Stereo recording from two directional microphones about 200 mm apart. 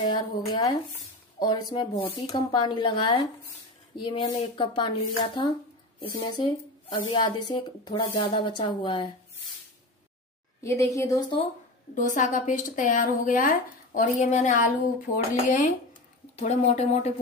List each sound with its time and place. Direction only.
0.1 s speech: 20° left (ahead or behind)
7.1 s speech: 20° left (ahead or behind)
10.6 s a woman's voice: 15° left (ahead or behind)
11.9 s speech: 40° left (ahead or behind)